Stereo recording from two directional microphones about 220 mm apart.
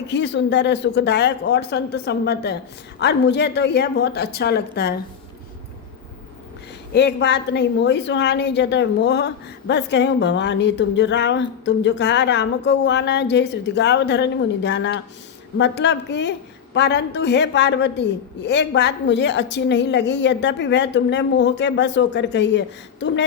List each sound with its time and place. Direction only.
0.1 s a woman's voice: 50° left (ahead or behind)
6.9 s a woman's voice: 50° left (ahead or behind)